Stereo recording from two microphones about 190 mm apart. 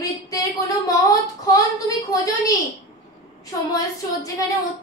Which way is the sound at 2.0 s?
20° left (ahead or behind).